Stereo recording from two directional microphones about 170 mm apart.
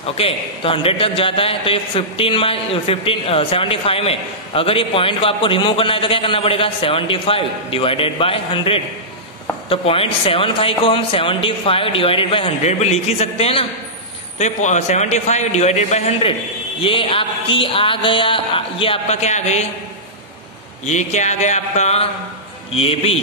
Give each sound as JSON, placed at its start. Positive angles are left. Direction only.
{"t": 0.0, "sound": "a man's voice", "side_deg": 35}
{"t": 20.8, "sound": "a man's voice", "side_deg": 45}